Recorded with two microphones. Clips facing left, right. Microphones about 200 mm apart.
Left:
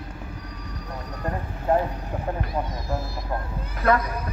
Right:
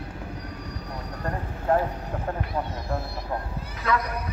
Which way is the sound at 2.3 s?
10° left (ahead or behind).